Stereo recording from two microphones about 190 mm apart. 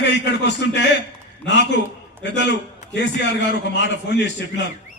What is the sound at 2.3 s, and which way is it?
Speech, 65° left (ahead or behind).